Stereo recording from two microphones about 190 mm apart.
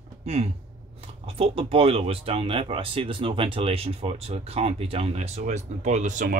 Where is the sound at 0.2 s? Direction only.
35° right (ahead or behind).